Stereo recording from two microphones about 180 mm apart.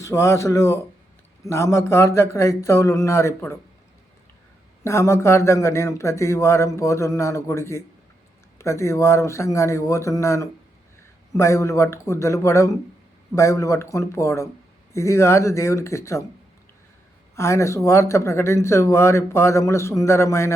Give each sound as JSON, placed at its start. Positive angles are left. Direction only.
{"t": 0.0, "sound": "speech", "side_deg": 15}
{"t": 4.8, "sound": "speech", "side_deg": 15}
{"t": 17.3, "sound": "speech", "side_deg": 15}